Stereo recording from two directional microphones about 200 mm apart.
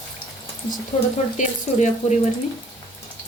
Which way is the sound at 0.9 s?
25° left (ahead or behind).